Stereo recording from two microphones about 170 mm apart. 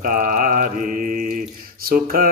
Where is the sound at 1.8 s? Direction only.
60° right (ahead or behind).